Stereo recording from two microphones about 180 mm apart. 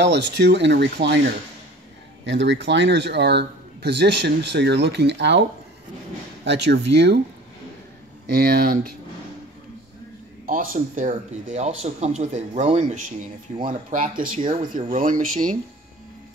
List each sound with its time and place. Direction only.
0.0 s speech: 70° right (ahead or behind)
2.2 s speech: 85° right
6.4 s speech: 75° right (ahead or behind)
8.3 s speech: 60° right (ahead or behind)
10.4 s speech: 50° right (ahead or behind)